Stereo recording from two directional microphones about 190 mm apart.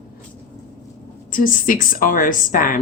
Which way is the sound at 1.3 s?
45° left (ahead or behind).